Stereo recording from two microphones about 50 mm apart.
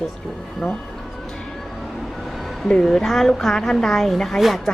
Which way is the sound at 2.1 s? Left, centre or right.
Centre.